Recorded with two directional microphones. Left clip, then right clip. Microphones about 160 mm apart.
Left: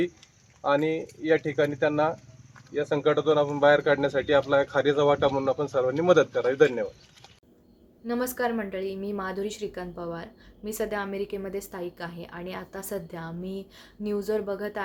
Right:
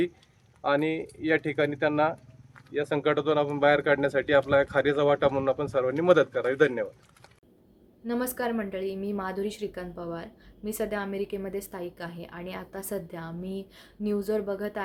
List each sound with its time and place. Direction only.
0.7 s a woman's voice: centre (ahead or behind)
1.5 s speech: 30° right (ahead or behind)
2.9 s speech: 30° right (ahead or behind)
4.4 s a woman's voice: 5° right (ahead or behind)